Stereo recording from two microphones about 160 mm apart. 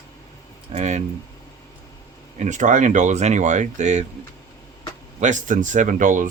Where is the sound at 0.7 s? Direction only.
45° right (ahead or behind).